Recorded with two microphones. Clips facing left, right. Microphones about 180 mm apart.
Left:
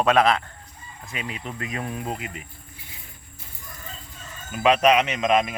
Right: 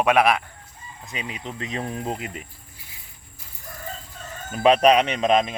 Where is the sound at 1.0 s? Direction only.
20° right (ahead or behind).